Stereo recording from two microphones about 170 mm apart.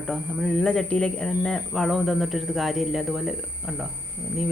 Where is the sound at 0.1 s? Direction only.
Centre (ahead or behind).